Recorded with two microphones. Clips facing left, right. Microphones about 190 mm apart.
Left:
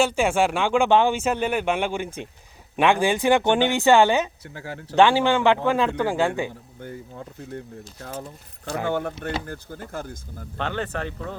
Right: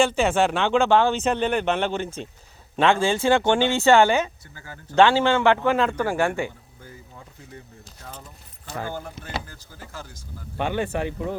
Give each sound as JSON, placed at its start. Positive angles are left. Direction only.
{"t": 0.0, "sound": "speech", "side_deg": 10}
{"t": 4.5, "sound": "speech", "side_deg": 75}
{"t": 4.9, "sound": "speech", "side_deg": 15}
{"t": 8.9, "sound": "speech", "side_deg": 70}
{"t": 10.6, "sound": "speech", "side_deg": -10}